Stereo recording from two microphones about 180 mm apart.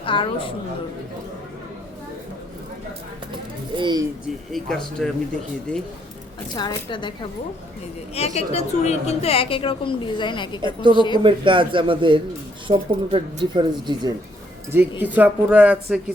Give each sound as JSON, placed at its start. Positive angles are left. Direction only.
{"t": 0.0, "sound": "a woman's voice", "side_deg": 30}
{"t": 3.8, "sound": "speech", "side_deg": -25}
{"t": 4.5, "sound": "speech", "side_deg": 5}
{"t": 6.5, "sound": "a woman's voice", "side_deg": 25}
{"t": 8.1, "sound": "a woman's voice", "side_deg": 35}
{"t": 11.2, "sound": "speech", "side_deg": -30}
{"t": 14.7, "sound": "speech", "side_deg": -10}